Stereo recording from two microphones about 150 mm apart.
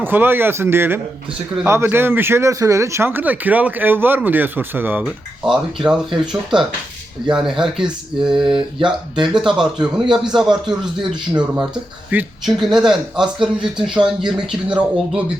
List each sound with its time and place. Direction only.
0.0 s speech: 15° right (ahead or behind)
8.5 s speech: 30° right (ahead or behind)
9.2 s speech: 5° right (ahead or behind)
11.0 s speech: 30° right (ahead or behind)
11.5 s speech: 5° right (ahead or behind)